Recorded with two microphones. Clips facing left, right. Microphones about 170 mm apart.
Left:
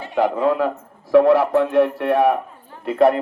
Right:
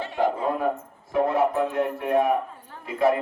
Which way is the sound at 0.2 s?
90° left.